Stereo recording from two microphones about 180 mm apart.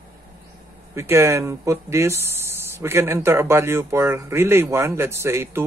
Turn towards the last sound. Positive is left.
turn(degrees=-15)  # may be behind; listen again after turning